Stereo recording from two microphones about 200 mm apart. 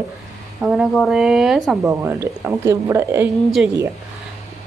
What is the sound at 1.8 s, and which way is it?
A woman's voice, 10° right (ahead or behind).